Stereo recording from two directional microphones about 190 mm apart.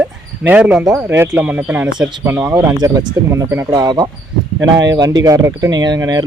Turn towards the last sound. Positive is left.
turn(degrees=-20)  # may be behind; listen again after turning